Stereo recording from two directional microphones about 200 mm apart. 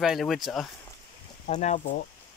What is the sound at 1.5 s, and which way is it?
Speech, 35° left (ahead or behind).